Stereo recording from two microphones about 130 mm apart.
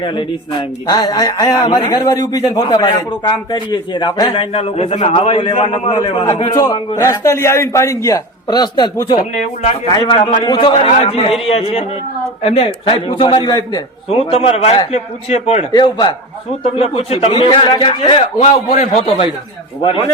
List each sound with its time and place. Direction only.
0.0 s a man's voice: 40° left (ahead or behind); by 5.1 s 55° left (ahead or behind)
5.1 s a man's voice: 45° left (ahead or behind)
6.5 s a man's voice: 30° left (ahead or behind)
9.4 s a man's voice: 60° left (ahead or behind)
9.9 s a man's voice: 35° left (ahead or behind)
10.8 s a man's voice: 60° left (ahead or behind); by 13.8 s 35° left (ahead or behind)
14.1 s a man's voice: 50° left (ahead or behind)
15.7 s a man's voice: 35° left (ahead or behind)
18.3 s a man's voice: 65° left (ahead or behind)